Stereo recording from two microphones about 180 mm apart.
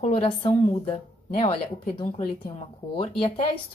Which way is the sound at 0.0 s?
35° left (ahead or behind).